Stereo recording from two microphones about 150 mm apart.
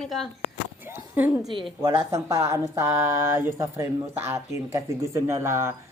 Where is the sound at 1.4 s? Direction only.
30° right (ahead or behind).